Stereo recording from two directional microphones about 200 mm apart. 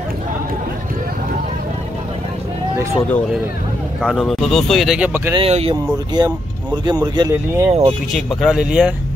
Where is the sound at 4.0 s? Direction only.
Centre (ahead or behind).